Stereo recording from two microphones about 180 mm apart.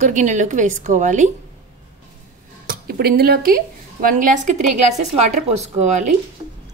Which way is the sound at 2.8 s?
60° right (ahead or behind).